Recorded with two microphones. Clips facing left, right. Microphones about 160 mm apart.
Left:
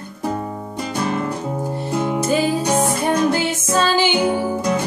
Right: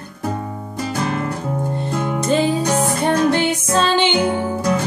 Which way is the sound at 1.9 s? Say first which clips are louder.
Left 3 dB; 20° left (ahead or behind).